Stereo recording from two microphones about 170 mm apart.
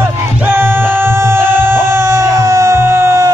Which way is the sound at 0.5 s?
10° right (ahead or behind).